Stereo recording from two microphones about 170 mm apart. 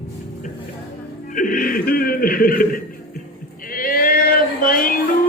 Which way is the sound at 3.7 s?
60° left (ahead or behind).